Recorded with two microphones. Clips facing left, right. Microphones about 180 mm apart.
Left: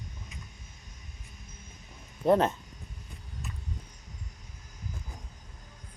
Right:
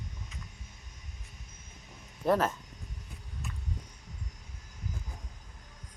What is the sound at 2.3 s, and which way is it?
Speech, 25° left (ahead or behind).